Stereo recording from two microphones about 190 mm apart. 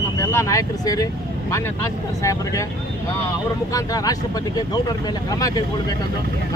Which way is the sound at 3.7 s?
20° left (ahead or behind).